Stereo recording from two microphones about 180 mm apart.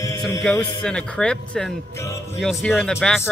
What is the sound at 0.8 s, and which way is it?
A man's voice, 5° left (ahead or behind).